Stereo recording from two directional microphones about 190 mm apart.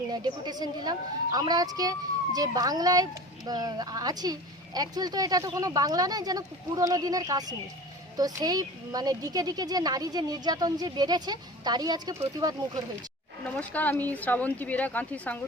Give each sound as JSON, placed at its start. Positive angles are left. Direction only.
{"t": 0.1, "sound": "speech", "side_deg": -20}
{"t": 13.6, "sound": "speech", "side_deg": 10}